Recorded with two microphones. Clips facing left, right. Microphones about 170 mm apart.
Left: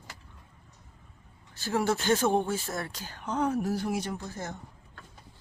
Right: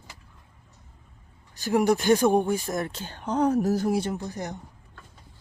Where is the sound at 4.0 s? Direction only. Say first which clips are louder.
Right 5 dB; 20° right (ahead or behind).